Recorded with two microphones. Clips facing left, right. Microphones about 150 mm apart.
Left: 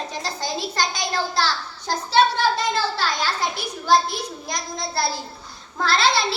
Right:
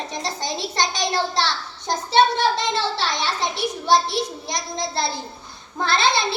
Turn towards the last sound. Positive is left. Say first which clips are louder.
# even
turn(degrees=-20)  # may be behind; listen again after turning